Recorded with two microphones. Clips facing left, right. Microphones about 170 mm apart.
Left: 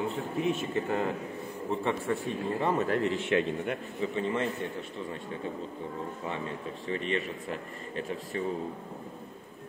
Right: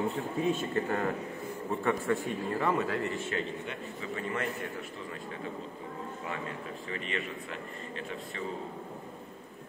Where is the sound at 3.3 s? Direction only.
55° left (ahead or behind).